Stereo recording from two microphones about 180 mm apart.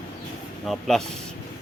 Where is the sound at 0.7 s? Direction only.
Centre (ahead or behind).